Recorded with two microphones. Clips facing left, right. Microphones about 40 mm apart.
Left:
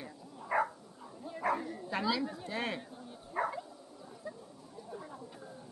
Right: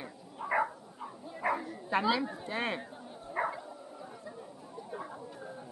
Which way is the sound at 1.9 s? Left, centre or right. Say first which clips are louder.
Right 4 dB; right.